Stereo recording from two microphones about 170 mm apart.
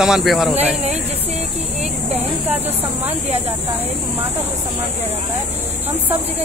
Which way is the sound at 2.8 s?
10° right (ahead or behind).